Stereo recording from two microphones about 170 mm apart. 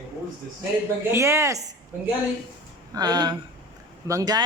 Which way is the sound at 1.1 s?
15° right (ahead or behind).